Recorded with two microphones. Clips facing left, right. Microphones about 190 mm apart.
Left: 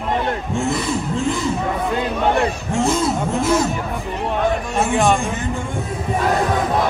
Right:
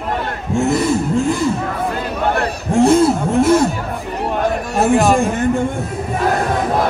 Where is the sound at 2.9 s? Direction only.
60° right (ahead or behind).